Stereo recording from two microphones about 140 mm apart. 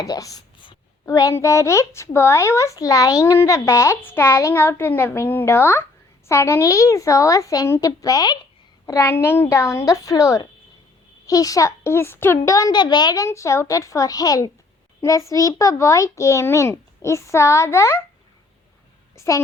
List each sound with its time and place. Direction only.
0.0 s a sound: 25° left (ahead or behind)
1.0 s speech: 25° left (ahead or behind)
19.1 s a woman's voice: 20° left (ahead or behind)